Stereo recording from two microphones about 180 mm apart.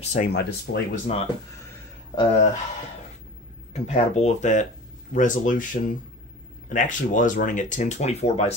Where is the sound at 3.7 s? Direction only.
40° left (ahead or behind).